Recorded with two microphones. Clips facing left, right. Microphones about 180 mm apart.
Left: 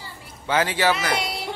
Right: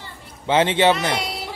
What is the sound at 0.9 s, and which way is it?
Speech, centre (ahead or behind).